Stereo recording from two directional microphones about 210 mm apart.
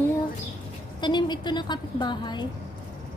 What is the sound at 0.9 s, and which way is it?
A woman's voice, 20° left (ahead or behind).